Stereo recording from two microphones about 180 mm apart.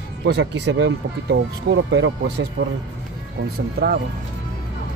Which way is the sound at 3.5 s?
60° right (ahead or behind).